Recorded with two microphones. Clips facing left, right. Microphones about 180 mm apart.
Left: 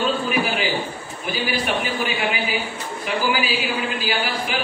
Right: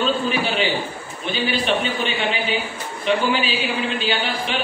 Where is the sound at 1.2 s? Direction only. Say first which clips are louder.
Right 2 dB; 25° right (ahead or behind).